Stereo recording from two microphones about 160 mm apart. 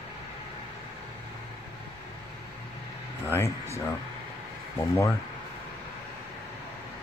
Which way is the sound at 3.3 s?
15° left (ahead or behind).